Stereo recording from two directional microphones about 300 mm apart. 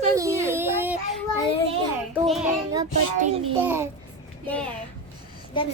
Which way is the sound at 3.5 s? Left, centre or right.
Centre.